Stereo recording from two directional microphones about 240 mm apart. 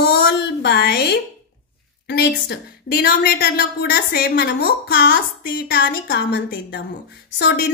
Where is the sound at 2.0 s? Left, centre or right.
Left.